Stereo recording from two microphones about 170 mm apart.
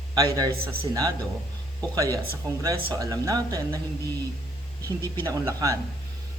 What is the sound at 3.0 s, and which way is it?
Speech, 20° right (ahead or behind).